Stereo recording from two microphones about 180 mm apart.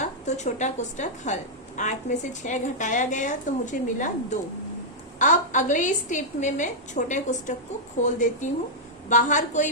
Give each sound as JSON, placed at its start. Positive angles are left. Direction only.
{"t": 0.0, "sound": "a woman's voice", "side_deg": 40}